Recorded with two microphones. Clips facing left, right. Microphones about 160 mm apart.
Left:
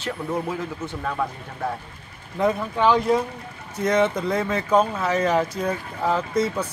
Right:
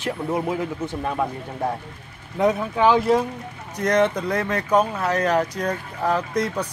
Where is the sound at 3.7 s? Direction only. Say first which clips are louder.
Right 1 dB; 5° left (ahead or behind).